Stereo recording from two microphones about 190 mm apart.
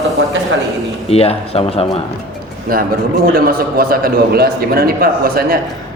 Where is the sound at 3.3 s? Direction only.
50° right (ahead or behind).